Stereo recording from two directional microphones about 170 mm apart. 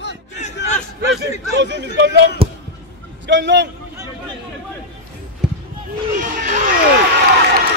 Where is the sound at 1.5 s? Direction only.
90° right.